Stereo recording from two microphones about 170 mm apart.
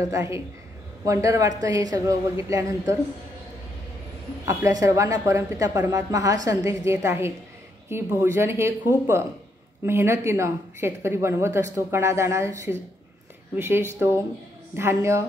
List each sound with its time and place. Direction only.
0.1 s a woman's voice: 15° right (ahead or behind)
4.5 s speech: 20° right (ahead or behind)